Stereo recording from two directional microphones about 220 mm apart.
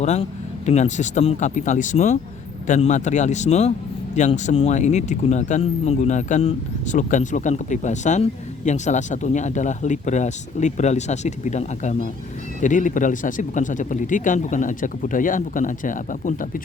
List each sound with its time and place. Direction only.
0.0 s speech: 30° left (ahead or behind)